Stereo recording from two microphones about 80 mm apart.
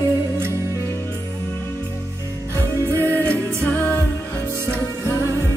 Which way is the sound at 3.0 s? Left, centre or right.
Left.